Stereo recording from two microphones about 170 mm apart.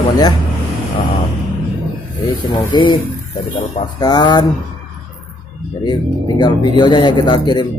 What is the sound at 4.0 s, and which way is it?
Speech, 25° left (ahead or behind).